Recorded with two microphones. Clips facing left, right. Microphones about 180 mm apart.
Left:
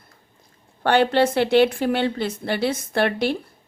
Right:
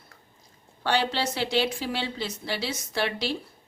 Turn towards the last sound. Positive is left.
turn(degrees=55)  # may be behind; listen again after turning